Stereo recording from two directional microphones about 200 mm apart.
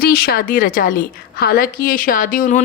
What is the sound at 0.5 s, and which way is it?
A woman's voice, 45° left (ahead or behind).